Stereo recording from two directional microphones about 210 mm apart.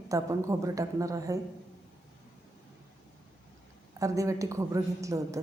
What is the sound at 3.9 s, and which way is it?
A woman's voice, 15° right (ahead or behind).